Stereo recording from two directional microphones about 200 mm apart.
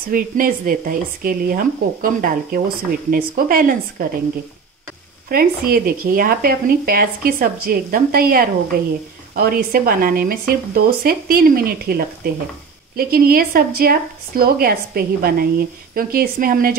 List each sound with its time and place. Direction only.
0.0 s speech: 45° right (ahead or behind)
5.3 s speech: 45° right (ahead or behind)